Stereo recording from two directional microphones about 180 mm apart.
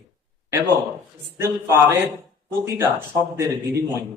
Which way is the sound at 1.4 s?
15° right (ahead or behind).